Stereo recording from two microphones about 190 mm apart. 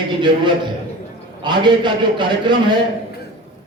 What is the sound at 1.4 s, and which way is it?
A man's voice, 25° right (ahead or behind).